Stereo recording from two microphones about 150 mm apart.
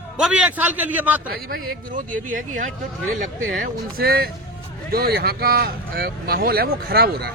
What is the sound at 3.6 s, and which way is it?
Speech, 85° right.